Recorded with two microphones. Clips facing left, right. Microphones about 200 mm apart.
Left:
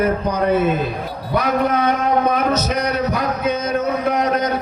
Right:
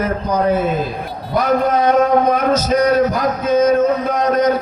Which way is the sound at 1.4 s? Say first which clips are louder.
Right 3 dB; 65° left (ahead or behind).